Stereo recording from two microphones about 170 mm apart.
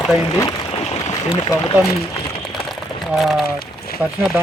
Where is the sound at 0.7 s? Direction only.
35° left (ahead or behind).